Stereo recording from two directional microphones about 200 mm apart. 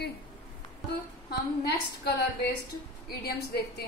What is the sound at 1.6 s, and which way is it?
A woman's voice, 55° left (ahead or behind).